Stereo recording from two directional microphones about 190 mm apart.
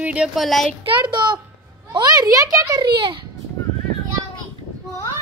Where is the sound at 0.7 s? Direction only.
25° right (ahead or behind).